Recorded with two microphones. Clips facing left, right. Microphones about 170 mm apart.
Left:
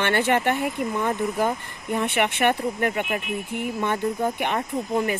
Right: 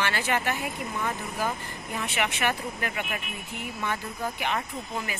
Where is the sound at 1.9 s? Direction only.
55° left (ahead or behind).